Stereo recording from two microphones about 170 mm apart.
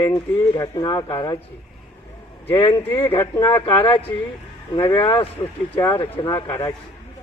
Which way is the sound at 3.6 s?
30° left (ahead or behind).